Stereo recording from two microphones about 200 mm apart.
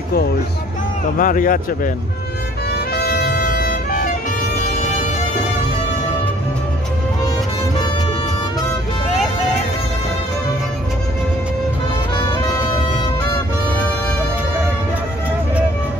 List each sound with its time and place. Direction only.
1.1 s a man's voice: 45° left (ahead or behind)
2.9 s music: 50° left (ahead or behind)